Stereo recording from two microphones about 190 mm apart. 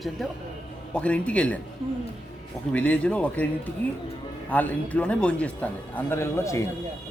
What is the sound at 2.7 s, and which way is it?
Speech, 5° left (ahead or behind).